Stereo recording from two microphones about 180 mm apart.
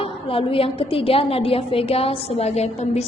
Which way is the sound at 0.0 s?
30° left (ahead or behind).